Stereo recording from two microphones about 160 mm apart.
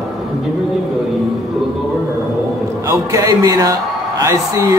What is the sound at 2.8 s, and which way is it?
Speech, 20° right (ahead or behind).